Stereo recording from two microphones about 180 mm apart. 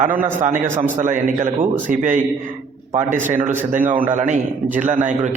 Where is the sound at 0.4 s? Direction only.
40° right (ahead or behind).